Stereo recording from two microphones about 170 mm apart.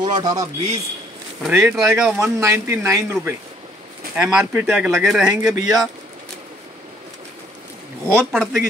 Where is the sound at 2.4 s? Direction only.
15° right (ahead or behind).